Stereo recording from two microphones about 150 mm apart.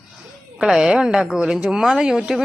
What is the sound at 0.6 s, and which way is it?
Speech, 5° right (ahead or behind).